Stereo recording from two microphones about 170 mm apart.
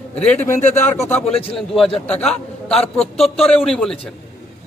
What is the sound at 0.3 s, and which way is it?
Speech, 15° left (ahead or behind).